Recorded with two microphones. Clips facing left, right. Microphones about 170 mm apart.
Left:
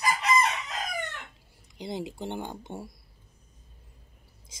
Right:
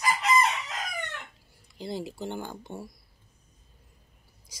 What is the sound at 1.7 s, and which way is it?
Speech, 20° left (ahead or behind).